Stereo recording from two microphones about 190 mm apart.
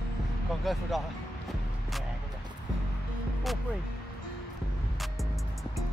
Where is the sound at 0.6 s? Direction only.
Centre (ahead or behind).